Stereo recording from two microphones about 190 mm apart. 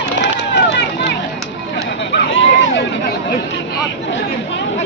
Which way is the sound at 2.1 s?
80° left.